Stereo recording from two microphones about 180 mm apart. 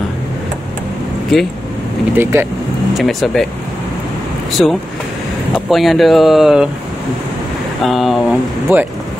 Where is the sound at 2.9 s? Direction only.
Centre (ahead or behind).